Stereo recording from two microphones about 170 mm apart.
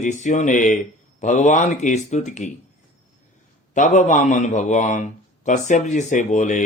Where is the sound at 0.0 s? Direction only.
45° left (ahead or behind).